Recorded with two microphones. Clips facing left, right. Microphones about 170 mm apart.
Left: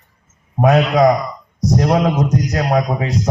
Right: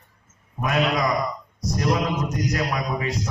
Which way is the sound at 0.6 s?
90° left.